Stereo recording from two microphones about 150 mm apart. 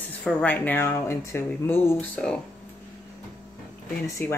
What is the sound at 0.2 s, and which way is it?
Speech, 10° left (ahead or behind).